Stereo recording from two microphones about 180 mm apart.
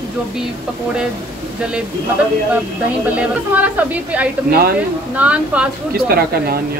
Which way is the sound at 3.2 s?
10° right (ahead or behind).